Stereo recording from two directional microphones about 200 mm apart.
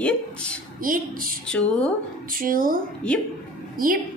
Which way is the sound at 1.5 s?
5° left (ahead or behind).